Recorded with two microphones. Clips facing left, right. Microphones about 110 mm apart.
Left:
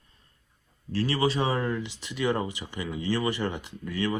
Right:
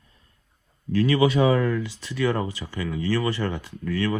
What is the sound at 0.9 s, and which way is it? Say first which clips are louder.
Speech: right 6 dB; 35° left (ahead or behind).